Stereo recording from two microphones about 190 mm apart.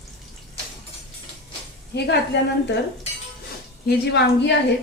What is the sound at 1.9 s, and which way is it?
Speech, 60° left (ahead or behind).